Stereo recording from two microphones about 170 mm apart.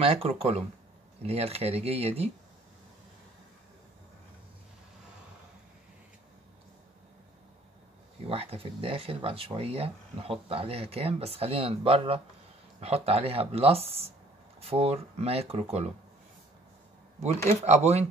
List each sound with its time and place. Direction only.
0.0 s speech: 35° right (ahead or behind)
8.3 s speech: 35° right (ahead or behind)
17.5 s speech: 40° right (ahead or behind)